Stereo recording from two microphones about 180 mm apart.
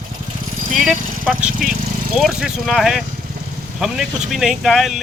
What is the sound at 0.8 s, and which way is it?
Speech, centre (ahead or behind).